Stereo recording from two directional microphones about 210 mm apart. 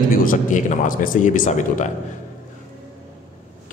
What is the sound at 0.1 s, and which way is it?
A man's voice, 40° left (ahead or behind).